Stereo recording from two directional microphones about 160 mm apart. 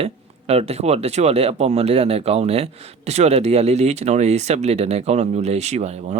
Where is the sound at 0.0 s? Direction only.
40° right (ahead or behind).